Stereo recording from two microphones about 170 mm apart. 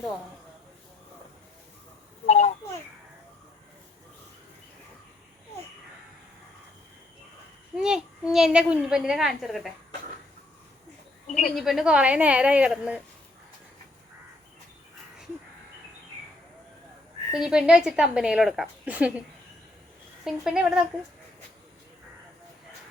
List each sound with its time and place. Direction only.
2.2 s a sound: 40° left (ahead or behind)
7.8 s a child's voice: 5° right (ahead or behind)
11.5 s a woman's voice: 5° right (ahead or behind)
17.3 s a child's voice: 5° right (ahead or behind)
20.2 s a child's voice: 5° right (ahead or behind)